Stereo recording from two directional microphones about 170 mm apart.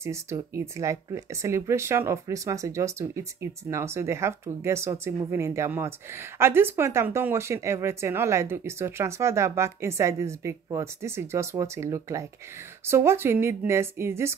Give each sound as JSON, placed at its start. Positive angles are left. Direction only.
{"t": 0.0, "sound": "speech", "side_deg": -15}